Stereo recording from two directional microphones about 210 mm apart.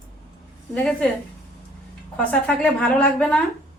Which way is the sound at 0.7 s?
5° left (ahead or behind).